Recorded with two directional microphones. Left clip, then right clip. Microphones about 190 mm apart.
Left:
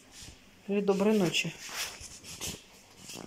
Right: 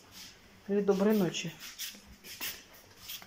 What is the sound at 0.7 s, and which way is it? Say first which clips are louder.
Speech: left 1 dB; 10° left (ahead or behind).